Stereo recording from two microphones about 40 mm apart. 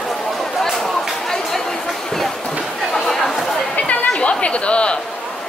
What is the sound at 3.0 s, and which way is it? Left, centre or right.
Chatter, centre.